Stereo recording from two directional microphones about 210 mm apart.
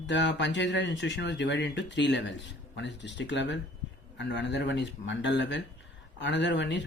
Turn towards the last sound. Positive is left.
turn(degrees=60)  # may be behind; listen again after turning